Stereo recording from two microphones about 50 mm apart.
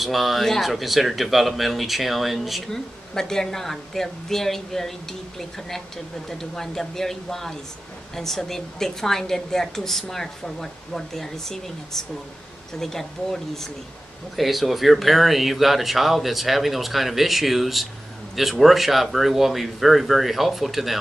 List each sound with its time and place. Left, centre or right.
0.0 s speech: centre
2.7 s a woman's voice: centre
6.3 s a woman's voice: centre